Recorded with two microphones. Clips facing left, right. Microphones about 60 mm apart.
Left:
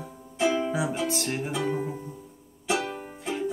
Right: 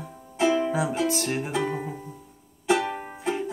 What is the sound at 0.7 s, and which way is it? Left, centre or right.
Music, centre.